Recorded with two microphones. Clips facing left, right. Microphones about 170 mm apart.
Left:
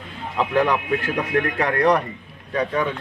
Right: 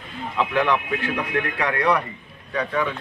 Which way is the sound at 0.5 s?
40° left (ahead or behind).